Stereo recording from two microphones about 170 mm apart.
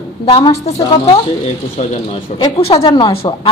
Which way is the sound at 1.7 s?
35° left (ahead or behind).